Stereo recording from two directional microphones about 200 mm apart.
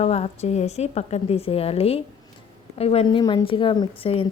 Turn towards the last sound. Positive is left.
turn(degrees=25)  # may be behind; listen again after turning